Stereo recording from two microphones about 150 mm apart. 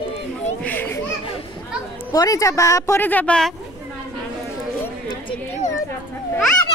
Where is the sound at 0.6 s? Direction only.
10° left (ahead or behind).